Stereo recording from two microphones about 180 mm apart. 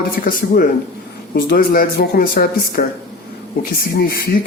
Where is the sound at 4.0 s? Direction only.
60° left (ahead or behind).